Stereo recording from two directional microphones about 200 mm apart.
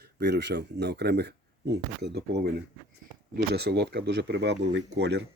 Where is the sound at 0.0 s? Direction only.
55° right (ahead or behind).